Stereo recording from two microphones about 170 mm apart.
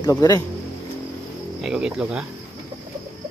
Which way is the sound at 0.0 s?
20° left (ahead or behind).